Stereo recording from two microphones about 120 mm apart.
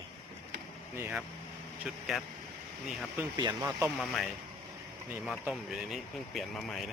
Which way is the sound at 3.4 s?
35° right (ahead or behind).